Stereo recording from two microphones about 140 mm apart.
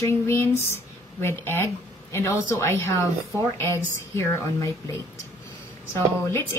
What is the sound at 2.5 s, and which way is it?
A woman's voice, 20° left (ahead or behind).